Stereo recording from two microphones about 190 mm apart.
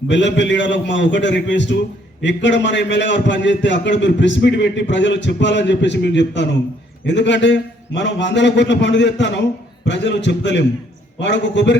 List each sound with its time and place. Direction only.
0.1 s a man's voice: 70° left (ahead or behind)